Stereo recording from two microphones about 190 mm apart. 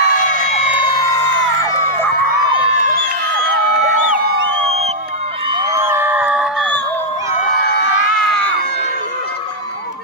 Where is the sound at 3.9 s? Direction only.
50° right (ahead or behind).